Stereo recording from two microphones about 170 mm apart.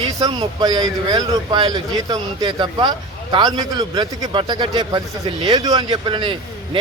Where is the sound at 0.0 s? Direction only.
25° right (ahead or behind).